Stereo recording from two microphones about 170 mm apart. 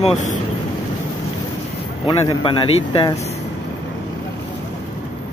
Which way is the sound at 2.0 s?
30° left (ahead or behind).